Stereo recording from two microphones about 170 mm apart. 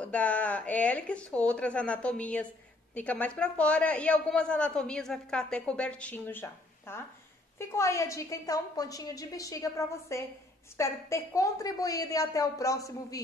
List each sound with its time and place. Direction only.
0.0 s a man's voice: 10° left (ahead or behind)